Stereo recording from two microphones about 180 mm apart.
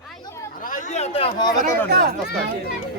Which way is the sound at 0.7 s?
40° left (ahead or behind).